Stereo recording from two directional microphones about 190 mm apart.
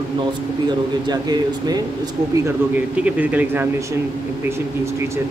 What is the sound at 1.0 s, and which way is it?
Speech, 20° right (ahead or behind).